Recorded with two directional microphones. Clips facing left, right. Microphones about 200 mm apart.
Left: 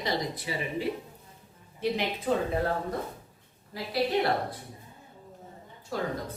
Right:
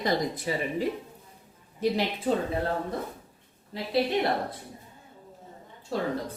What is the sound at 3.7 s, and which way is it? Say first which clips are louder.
Speech: right 2 dB; 25° right (ahead or behind).